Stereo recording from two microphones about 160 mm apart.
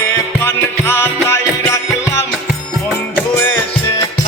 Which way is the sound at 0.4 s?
15° left (ahead or behind).